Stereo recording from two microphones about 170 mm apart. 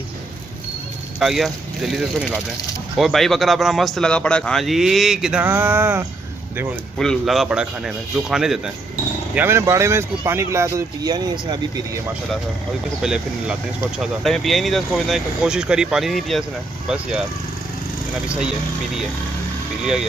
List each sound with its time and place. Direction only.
1.2 s speech: centre (ahead or behind)
7.0 s speech: centre (ahead or behind); by 12.0 s 25° right (ahead or behind)
13.0 s speech: 5° right (ahead or behind)